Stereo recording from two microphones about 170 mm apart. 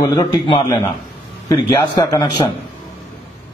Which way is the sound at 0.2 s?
30° left (ahead or behind).